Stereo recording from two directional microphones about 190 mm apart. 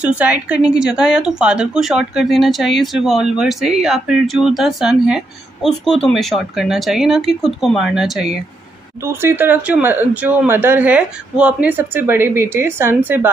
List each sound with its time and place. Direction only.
0.0 s a woman's voice: 5° right (ahead or behind)